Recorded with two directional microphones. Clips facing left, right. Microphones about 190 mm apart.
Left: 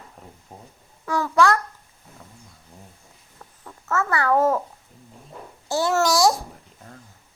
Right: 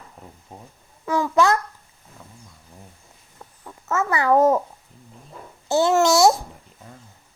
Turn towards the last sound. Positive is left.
turn(degrees=-25)  # may be behind; listen again after turning